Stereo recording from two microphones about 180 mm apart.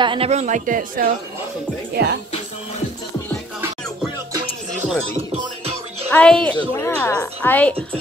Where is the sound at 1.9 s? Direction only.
65° right (ahead or behind).